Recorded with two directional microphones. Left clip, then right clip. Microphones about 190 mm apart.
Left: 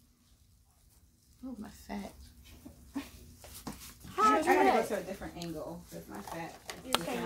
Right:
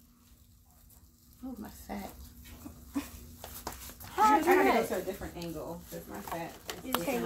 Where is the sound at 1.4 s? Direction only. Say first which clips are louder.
Right 1 dB; 25° left (ahead or behind).